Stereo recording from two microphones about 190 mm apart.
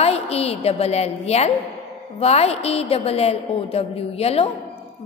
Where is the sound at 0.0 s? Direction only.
30° left (ahead or behind).